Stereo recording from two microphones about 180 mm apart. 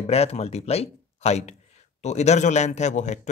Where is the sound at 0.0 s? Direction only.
35° left (ahead or behind).